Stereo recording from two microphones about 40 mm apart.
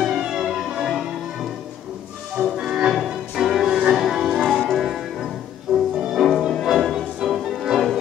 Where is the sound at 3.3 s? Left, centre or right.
Centre.